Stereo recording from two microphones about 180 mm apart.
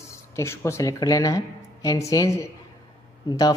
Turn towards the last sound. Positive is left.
turn(degrees=20)  # may be behind; listen again after turning